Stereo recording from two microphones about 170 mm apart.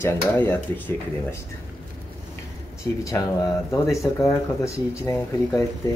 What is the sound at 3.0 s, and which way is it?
Speech, 20° left (ahead or behind).